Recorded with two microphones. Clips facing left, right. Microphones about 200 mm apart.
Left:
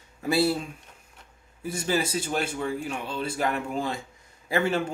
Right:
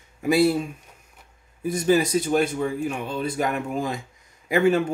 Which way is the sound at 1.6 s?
15° right (ahead or behind).